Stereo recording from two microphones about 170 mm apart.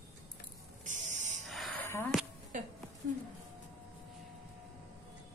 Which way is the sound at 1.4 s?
Centre (ahead or behind).